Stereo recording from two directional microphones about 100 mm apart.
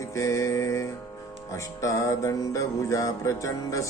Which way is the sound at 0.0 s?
30° left (ahead or behind).